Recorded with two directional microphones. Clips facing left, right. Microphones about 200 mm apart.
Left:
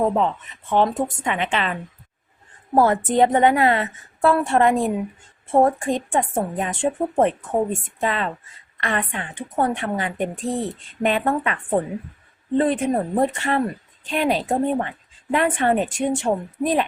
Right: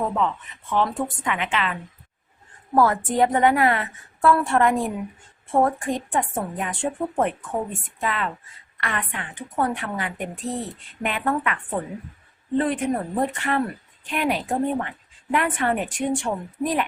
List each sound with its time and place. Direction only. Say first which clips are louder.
0.1 s a woman's voice: left 3 dB; 30° left (ahead or behind)